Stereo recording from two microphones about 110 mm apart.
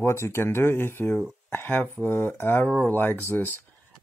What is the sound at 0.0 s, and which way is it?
Speech, 25° left (ahead or behind).